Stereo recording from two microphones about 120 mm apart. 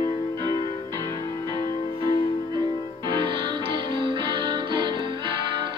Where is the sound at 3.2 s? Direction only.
45° right (ahead or behind).